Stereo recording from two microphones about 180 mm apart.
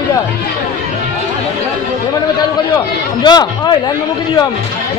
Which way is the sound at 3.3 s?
25° left (ahead or behind).